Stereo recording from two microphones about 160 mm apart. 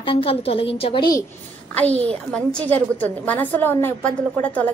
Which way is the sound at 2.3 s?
10° left (ahead or behind).